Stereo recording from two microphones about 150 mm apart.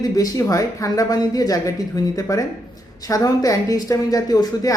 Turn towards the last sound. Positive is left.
turn(degrees=25)  # may be behind; listen again after turning